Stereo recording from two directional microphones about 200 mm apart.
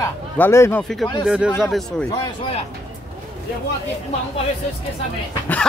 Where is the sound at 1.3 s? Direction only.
5° right (ahead or behind).